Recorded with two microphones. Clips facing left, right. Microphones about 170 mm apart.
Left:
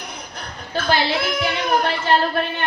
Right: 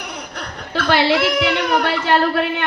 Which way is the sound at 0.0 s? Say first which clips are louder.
Right 4 dB; 65° right (ahead or behind).